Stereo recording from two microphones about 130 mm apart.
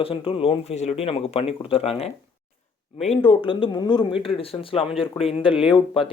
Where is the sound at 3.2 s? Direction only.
40° left (ahead or behind).